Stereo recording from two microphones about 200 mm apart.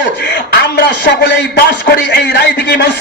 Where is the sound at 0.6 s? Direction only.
60° left (ahead or behind).